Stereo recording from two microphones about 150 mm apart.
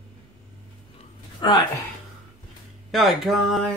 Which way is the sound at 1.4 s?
30° left (ahead or behind).